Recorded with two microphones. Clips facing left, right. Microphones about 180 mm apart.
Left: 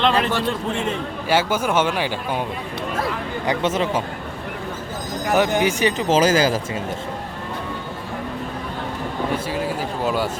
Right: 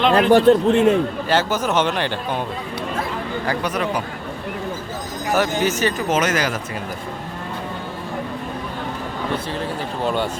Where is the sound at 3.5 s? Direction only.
25° left (ahead or behind).